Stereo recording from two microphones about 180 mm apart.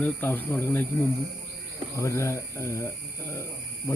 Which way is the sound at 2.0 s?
15° left (ahead or behind).